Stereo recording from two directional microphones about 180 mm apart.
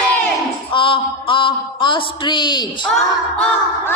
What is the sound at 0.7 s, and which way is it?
A man's voice, 30° left (ahead or behind).